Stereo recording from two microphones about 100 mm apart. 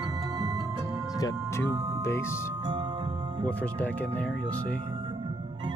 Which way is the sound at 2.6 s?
55° right (ahead or behind).